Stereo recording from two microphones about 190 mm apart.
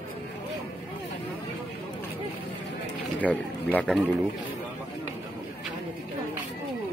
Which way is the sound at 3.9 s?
5° left (ahead or behind).